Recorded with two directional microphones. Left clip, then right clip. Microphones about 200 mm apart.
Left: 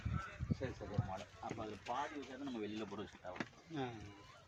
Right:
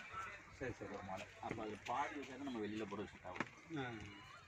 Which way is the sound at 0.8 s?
55° left (ahead or behind).